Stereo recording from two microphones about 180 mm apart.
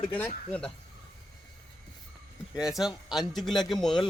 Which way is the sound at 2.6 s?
Centre (ahead or behind).